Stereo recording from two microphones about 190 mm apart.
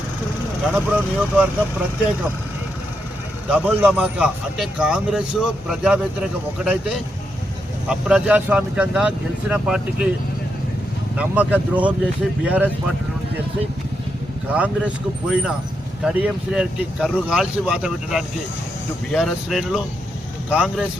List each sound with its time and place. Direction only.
0.7 s speech: 10° right (ahead or behind)
3.5 s a man's voice: 5° right (ahead or behind)
11.2 s speech: 10° right (ahead or behind)
14.5 s a man's voice: 5° right (ahead or behind)